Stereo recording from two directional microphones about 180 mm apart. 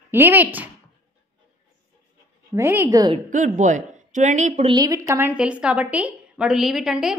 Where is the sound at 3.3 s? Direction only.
45° right (ahead or behind).